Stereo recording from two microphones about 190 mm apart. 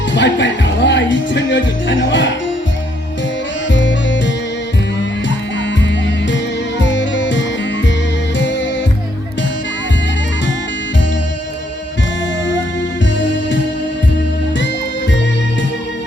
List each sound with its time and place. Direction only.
0.1 s speech: 70° left (ahead or behind)
3.7 s music: 70° left (ahead or behind)
6.3 s music: 70° left (ahead or behind)
13.1 s music: 70° left (ahead or behind)